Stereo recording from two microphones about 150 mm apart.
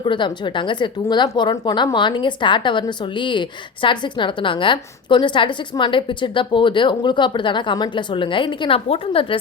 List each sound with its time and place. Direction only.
0.0 s a woman's voice: 30° left (ahead or behind)